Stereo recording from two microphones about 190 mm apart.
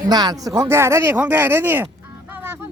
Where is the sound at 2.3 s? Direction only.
10° right (ahead or behind).